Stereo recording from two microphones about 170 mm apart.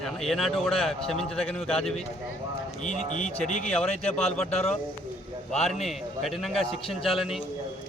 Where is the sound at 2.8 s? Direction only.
45° left (ahead or behind).